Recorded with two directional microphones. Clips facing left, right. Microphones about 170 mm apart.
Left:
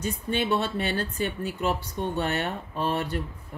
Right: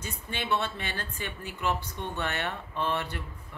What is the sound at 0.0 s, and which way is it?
Speech, 45° left (ahead or behind).